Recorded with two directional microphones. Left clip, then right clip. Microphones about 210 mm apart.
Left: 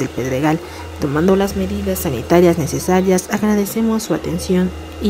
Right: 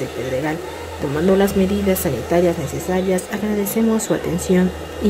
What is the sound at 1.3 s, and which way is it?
Speech, centre (ahead or behind).